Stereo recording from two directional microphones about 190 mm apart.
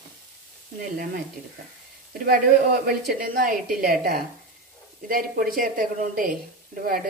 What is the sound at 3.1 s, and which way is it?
A woman's voice, 45° right (ahead or behind).